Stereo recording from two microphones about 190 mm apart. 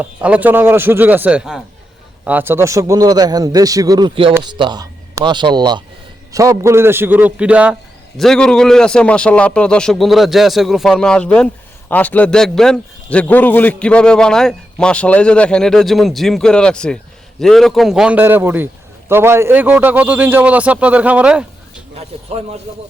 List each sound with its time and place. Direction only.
0.0 s a man's voice: 5° right (ahead or behind)
21.9 s speech: 30° right (ahead or behind)